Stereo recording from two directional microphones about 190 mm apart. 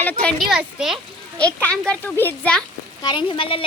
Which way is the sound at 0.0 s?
10° left (ahead or behind).